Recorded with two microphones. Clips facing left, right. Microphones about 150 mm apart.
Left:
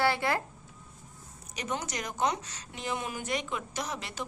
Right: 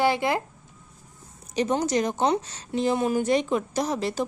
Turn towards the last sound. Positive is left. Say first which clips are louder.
# right 11 dB
turn(degrees=-35)  # may be behind; listen again after turning